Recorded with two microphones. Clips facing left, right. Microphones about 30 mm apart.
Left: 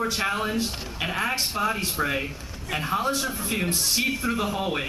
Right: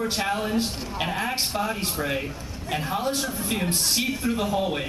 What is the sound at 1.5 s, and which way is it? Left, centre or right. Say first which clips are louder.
Speech: left 2 dB; centre.